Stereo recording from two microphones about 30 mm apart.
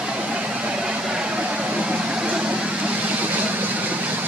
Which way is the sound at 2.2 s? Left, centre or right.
Right.